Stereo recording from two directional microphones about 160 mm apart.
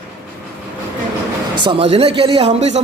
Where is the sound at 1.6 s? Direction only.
35° right (ahead or behind).